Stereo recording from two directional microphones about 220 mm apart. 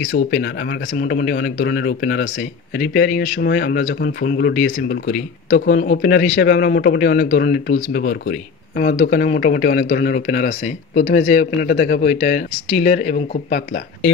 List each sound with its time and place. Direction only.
0.0 s speech: 35° left (ahead or behind)
5.5 s speech: 50° left (ahead or behind)
11.1 s speech: 30° left (ahead or behind)
11.6 s speech: 45° left (ahead or behind)